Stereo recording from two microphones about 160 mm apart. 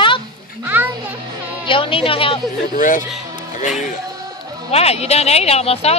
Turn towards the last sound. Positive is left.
turn(degrees=40)  # may be behind; listen again after turning